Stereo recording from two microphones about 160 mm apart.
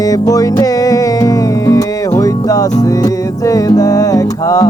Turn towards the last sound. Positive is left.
turn(degrees=20)  # may be behind; listen again after turning